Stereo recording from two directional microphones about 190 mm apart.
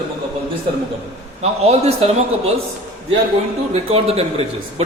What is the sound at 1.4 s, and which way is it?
Speech, 35° right (ahead or behind).